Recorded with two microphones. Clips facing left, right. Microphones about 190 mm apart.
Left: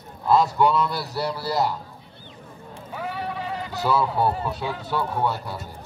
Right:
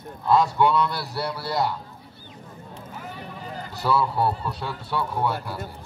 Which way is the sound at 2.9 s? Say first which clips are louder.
Left 9 dB; 85° left.